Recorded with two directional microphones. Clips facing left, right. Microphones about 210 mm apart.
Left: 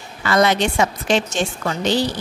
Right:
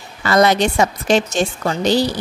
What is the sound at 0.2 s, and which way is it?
Speech, 40° right (ahead or behind).